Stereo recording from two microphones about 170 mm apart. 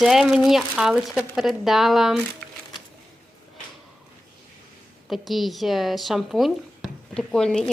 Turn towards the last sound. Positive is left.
turn(degrees=5)  # may be behind; listen again after turning